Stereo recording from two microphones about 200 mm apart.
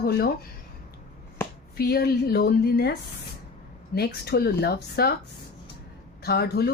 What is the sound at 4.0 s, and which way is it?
Speech, 55° left (ahead or behind).